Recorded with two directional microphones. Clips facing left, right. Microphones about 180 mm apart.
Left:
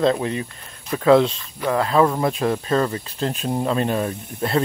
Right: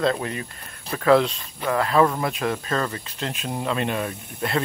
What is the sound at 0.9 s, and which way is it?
Speech, 15° left (ahead or behind).